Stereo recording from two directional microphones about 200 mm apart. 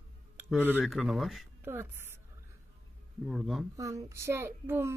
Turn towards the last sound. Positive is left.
turn(degrees=-10)  # may be behind; listen again after turning